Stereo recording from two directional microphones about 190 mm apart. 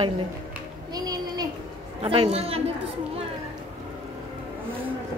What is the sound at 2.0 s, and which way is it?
Speech, 30° right (ahead or behind).